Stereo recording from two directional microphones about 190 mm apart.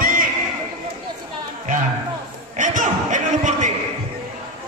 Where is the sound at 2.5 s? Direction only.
40° right (ahead or behind).